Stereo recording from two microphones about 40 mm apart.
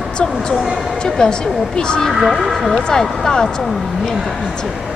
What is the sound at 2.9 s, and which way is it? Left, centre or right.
Speech, centre.